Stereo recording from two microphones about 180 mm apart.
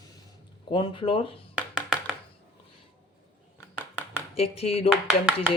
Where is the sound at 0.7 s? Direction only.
30° left (ahead or behind).